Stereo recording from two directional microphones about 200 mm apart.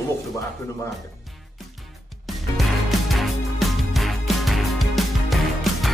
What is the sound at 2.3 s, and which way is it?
Music, centre (ahead or behind).